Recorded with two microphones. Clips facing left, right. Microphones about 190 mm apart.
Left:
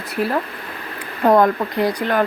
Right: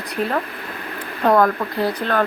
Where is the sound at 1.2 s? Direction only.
20° left (ahead or behind).